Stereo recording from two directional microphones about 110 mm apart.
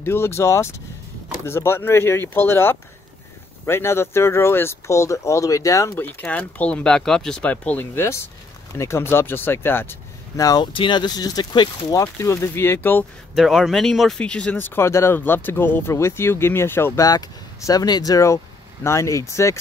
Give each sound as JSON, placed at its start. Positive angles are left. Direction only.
{"t": 0.0, "sound": "speech", "side_deg": 20}
{"t": 5.9, "sound": "speech", "side_deg": 10}
{"t": 10.4, "sound": "speech", "side_deg": 35}
{"t": 10.7, "sound": "speech", "side_deg": 45}
{"t": 12.0, "sound": "speech", "side_deg": 25}
{"t": 13.3, "sound": "speech", "side_deg": 0}
{"t": 17.6, "sound": "speech", "side_deg": 35}